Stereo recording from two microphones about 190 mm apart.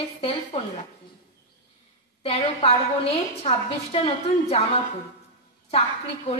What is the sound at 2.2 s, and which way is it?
A woman's voice, 30° left (ahead or behind).